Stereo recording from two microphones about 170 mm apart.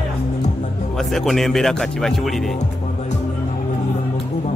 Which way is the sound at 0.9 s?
Centre (ahead or behind).